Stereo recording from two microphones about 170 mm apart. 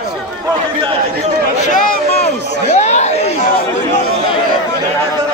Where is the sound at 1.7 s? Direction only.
50° left (ahead or behind).